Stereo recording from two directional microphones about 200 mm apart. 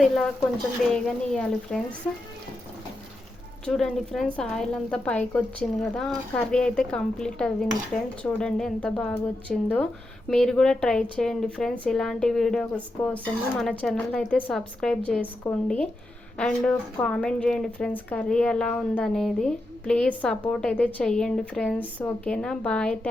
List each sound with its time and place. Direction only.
0.9 s speech: 5° left (ahead or behind)
3.7 s speech: centre (ahead or behind)